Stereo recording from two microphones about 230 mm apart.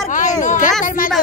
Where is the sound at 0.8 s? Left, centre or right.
Left.